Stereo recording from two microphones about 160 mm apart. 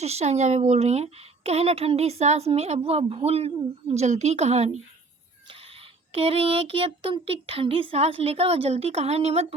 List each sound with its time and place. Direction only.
0.0 s a woman's voice: 40° right (ahead or behind)